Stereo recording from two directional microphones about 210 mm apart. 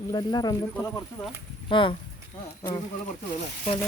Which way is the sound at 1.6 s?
25° left (ahead or behind).